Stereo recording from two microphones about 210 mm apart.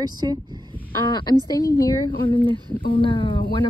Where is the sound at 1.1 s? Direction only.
20° left (ahead or behind).